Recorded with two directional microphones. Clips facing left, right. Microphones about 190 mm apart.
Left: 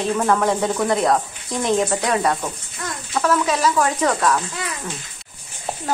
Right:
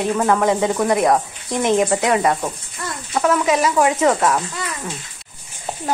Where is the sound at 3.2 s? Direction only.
20° right (ahead or behind).